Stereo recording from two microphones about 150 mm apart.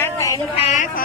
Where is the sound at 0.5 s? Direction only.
50° left (ahead or behind).